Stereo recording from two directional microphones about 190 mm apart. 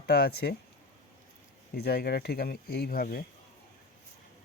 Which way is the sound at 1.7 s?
55° left (ahead or behind).